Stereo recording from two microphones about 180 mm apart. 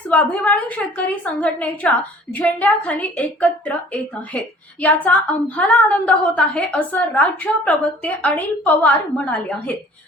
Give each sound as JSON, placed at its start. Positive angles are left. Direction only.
{"t": 0.1, "sound": "a woman's voice", "side_deg": 10}